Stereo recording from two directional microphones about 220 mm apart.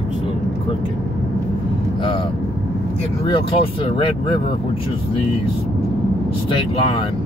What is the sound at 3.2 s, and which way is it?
Speech, 25° left (ahead or behind).